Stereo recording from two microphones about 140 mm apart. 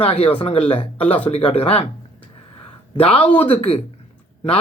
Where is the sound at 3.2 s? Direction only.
10° left (ahead or behind).